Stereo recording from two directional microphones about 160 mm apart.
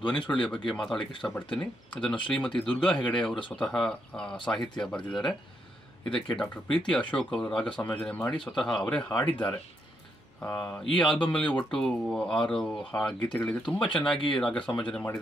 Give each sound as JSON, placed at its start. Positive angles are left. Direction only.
{"t": 0.2, "sound": "speech", "side_deg": 30}
{"t": 0.7, "sound": "speech", "side_deg": 0}